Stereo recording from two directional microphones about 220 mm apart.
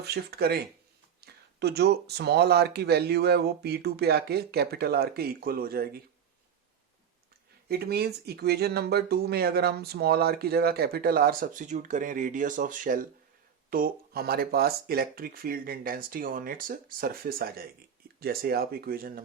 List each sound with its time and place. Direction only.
0.0 s speech: 45° right (ahead or behind)
7.7 s speech: 45° right (ahead or behind)